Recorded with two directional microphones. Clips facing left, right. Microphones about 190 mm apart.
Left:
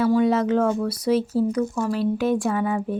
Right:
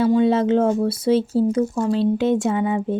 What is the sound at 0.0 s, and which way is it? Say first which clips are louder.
Speech: right 2 dB; 25° right (ahead or behind).